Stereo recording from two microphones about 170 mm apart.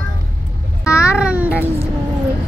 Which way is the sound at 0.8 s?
15° left (ahead or behind).